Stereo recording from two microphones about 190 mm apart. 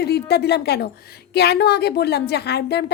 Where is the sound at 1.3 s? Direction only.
60° left (ahead or behind).